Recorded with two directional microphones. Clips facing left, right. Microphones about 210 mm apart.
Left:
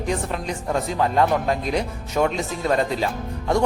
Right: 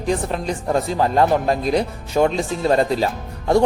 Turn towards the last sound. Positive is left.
turn(degrees=-35)  # may be behind; listen again after turning